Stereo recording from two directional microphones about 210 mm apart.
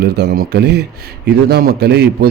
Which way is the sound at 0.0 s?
50° right (ahead or behind).